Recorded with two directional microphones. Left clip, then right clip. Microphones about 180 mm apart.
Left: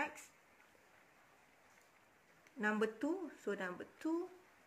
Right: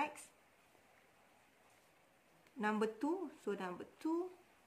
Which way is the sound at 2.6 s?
20° right (ahead or behind).